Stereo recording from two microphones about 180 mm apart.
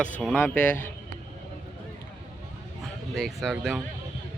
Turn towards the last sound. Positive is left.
turn(degrees=-5)  # may be behind; listen again after turning